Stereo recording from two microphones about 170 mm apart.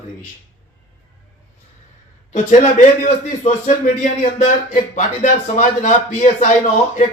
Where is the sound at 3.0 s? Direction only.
45° left (ahead or behind).